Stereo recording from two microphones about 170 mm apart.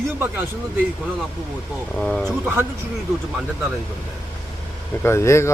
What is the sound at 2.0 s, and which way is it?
Speech, 5° left (ahead or behind).